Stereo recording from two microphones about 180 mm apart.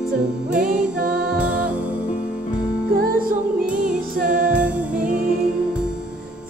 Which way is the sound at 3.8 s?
50° right (ahead or behind).